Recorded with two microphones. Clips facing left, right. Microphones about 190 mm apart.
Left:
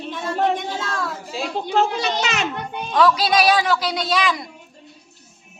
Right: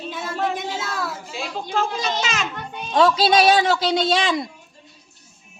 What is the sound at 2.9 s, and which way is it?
Speech, 25° right (ahead or behind).